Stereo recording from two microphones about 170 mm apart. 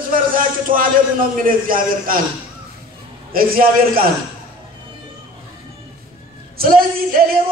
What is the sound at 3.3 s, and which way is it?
Speech, 55° right (ahead or behind).